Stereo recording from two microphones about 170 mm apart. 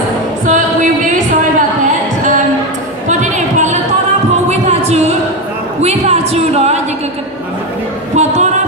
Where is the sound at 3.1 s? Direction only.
45° right (ahead or behind).